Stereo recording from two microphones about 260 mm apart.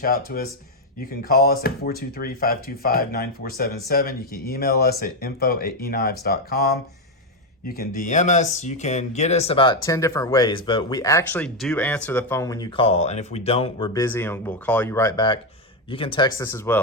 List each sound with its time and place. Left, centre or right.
0.0 s speech: left; by 16.8 s centre